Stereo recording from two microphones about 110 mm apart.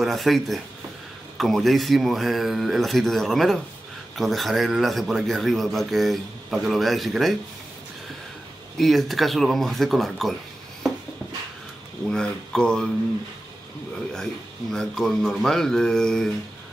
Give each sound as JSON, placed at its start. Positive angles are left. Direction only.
{"t": 0.0, "sound": "a man's voice", "side_deg": 0}
{"t": 8.7, "sound": "a man's voice", "side_deg": 0}
{"t": 12.1, "sound": "speech", "side_deg": 5}
{"t": 14.1, "sound": "a man's voice", "side_deg": 5}